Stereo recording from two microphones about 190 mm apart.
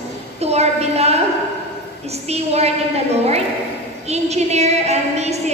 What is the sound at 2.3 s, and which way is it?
Speech, 35° right (ahead or behind).